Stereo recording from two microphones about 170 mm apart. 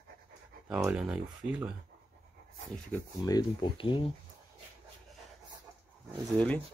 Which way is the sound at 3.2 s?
25° left (ahead or behind).